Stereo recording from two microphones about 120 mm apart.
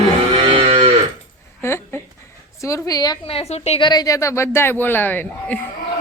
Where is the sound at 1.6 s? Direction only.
20° left (ahead or behind).